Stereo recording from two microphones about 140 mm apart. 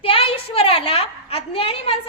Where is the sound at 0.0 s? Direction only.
40° left (ahead or behind).